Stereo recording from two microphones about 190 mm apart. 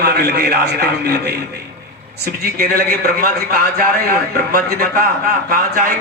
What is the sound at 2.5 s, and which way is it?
A man's voice, 55° right (ahead or behind).